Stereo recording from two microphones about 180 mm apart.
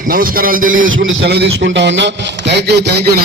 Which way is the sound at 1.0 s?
65° right (ahead or behind).